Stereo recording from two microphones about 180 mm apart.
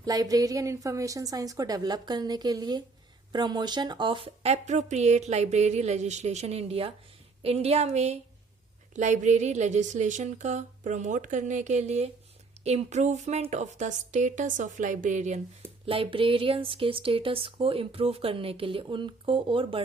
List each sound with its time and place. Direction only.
0.0 s a woman's voice: 20° right (ahead or behind); by 15.4 s 40° right (ahead or behind)
15.9 s speech: 30° right (ahead or behind)